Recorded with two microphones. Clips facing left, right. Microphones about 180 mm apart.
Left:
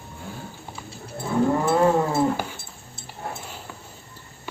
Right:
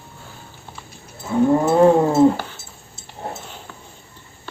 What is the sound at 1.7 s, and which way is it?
Cat, 25° right (ahead or behind).